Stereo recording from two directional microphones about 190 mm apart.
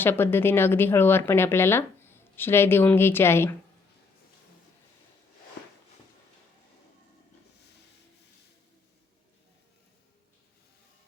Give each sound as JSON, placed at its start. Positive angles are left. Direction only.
{"t": 0.0, "sound": "speech", "side_deg": 10}